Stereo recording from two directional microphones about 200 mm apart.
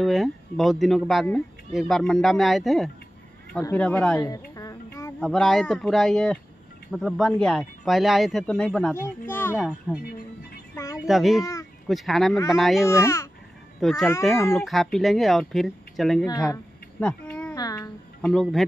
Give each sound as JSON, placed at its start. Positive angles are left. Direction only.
{"t": 0.0, "sound": "speech", "side_deg": 0}
{"t": 4.2, "sound": "music", "side_deg": 20}
{"t": 5.2, "sound": "speech", "side_deg": 0}
{"t": 9.6, "sound": "speech", "side_deg": 0}
{"t": 10.0, "sound": "speech", "side_deg": 50}
{"t": 10.7, "sound": "a sound", "side_deg": 15}
{"t": 11.0, "sound": "speech", "side_deg": 0}
{"t": 12.8, "sound": "speech", "side_deg": 15}
{"t": 13.7, "sound": "speech", "side_deg": 0}
{"t": 16.3, "sound": "speech", "side_deg": 20}
{"t": 17.0, "sound": "a sound", "side_deg": 5}
{"t": 17.6, "sound": "music", "side_deg": 20}
{"t": 18.2, "sound": "speech", "side_deg": 0}